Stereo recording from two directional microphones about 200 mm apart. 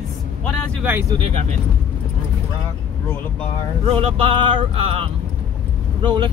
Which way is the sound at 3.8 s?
30° right (ahead or behind).